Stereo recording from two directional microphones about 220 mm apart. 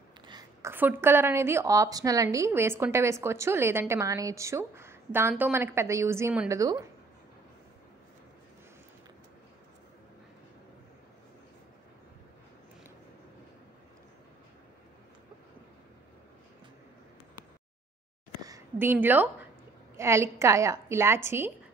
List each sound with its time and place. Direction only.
0.3 s a woman's voice: 15° right (ahead or behind)
18.4 s a sound: 15° right (ahead or behind)
20.0 s a woman's voice: 15° right (ahead or behind)